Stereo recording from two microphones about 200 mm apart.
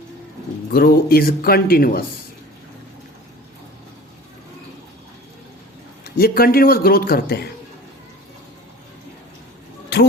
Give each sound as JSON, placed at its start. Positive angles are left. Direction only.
{"t": 0.7, "sound": "speech", "side_deg": 50}
{"t": 6.1, "sound": "speech", "side_deg": 50}